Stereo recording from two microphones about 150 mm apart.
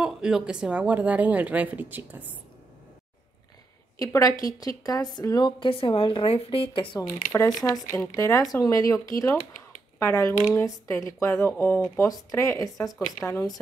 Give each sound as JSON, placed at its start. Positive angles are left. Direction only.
{"t": 0.0, "sound": "speech", "side_deg": -5}
{"t": 4.0, "sound": "a woman's voice", "side_deg": 25}
{"t": 7.0, "sound": "speech", "side_deg": 20}